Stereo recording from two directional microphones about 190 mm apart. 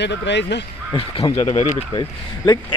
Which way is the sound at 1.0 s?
30° left (ahead or behind).